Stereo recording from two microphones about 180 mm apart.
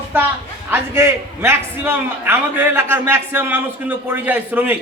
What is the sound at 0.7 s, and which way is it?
A man's voice, 15° right (ahead or behind).